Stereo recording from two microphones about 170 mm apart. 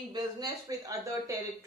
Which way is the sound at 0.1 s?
20° right (ahead or behind).